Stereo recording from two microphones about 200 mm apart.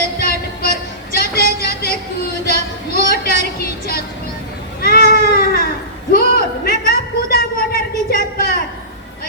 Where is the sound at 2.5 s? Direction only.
50° left (ahead or behind).